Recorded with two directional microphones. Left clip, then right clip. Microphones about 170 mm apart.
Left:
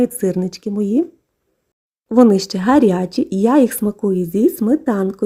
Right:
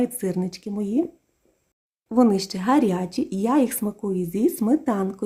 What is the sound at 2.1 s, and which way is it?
Speech, 35° left (ahead or behind).